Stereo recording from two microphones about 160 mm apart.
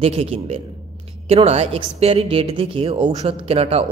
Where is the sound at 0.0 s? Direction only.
40° right (ahead or behind).